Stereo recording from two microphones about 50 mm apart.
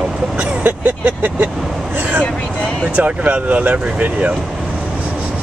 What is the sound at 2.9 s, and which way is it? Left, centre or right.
Speech, right.